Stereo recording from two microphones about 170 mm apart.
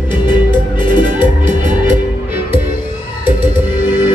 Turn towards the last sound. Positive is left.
turn(degrees=-15)  # may be behind; listen again after turning